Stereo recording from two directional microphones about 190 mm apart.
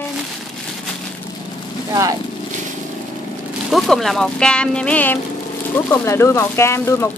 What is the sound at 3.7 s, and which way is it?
Speech, centre (ahead or behind).